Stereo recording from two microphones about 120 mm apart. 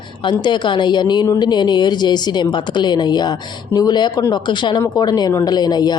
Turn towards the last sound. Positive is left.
turn(degrees=35)  # may be behind; listen again after turning